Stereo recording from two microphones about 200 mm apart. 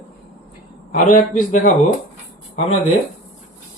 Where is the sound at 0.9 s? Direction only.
40° left (ahead or behind).